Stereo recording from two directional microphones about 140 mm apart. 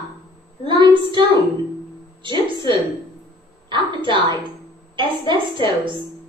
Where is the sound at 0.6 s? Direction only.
30° right (ahead or behind).